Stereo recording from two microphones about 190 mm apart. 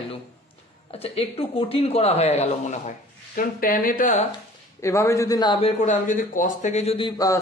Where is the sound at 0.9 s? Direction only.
30° left (ahead or behind).